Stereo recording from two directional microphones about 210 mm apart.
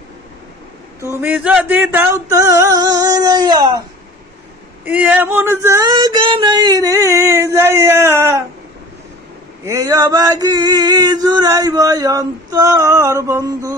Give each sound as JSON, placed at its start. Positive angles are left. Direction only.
{"t": 1.0, "sound": "male singing", "side_deg": -10}
{"t": 4.8, "sound": "male singing", "side_deg": -5}
{"t": 9.7, "sound": "male singing", "side_deg": -15}